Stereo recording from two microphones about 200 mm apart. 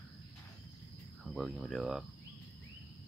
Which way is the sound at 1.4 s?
Centre (ahead or behind).